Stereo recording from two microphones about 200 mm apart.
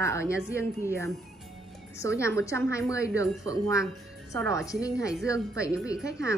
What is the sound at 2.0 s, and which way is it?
A woman's voice, 15° left (ahead or behind).